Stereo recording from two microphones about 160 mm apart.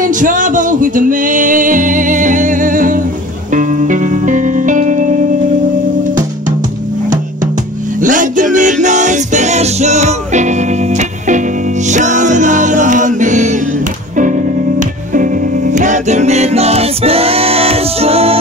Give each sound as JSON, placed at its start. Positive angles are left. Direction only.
{"t": 0.0, "sound": "music", "side_deg": -55}
{"t": 8.0, "sound": "music", "side_deg": -55}
{"t": 14.8, "sound": "music", "side_deg": -55}